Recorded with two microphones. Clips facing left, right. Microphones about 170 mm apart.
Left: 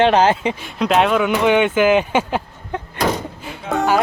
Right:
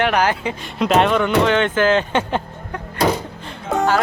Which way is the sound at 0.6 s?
Centre (ahead or behind).